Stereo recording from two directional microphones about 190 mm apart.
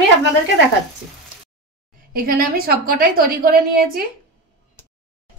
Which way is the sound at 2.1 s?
50° right (ahead or behind).